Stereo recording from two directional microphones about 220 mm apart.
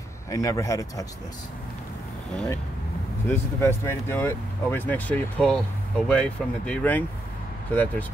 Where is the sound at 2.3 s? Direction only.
5° left (ahead or behind).